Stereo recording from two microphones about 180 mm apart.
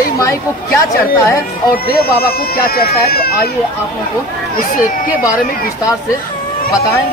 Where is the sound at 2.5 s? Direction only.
55° left (ahead or behind).